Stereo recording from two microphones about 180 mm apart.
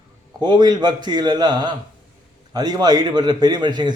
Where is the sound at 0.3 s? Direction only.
25° right (ahead or behind).